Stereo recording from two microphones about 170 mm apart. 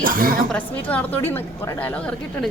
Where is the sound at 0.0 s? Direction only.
55° right (ahead or behind).